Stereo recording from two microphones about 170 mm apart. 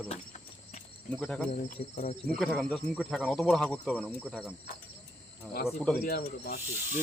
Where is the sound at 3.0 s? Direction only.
5° right (ahead or behind).